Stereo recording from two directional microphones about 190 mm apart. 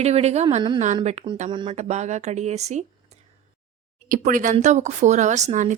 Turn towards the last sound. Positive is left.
turn(degrees=-40)  # may be behind; listen again after turning